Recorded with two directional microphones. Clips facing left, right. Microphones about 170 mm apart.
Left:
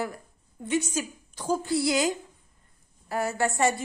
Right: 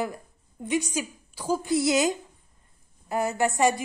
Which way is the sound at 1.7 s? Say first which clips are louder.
Right 3 dB; 20° right (ahead or behind).